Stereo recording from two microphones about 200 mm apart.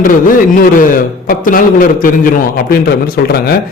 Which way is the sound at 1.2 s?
45° left (ahead or behind).